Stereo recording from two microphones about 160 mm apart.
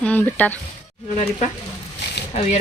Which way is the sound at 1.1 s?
40° left (ahead or behind).